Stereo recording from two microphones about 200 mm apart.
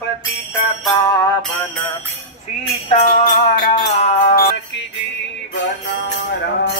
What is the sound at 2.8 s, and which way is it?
Music, 35° left (ahead or behind).